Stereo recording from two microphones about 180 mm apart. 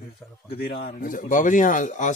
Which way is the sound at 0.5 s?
65° left (ahead or behind).